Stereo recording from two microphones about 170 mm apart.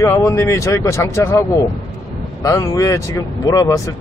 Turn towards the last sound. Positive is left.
turn(degrees=20)  # may be behind; listen again after turning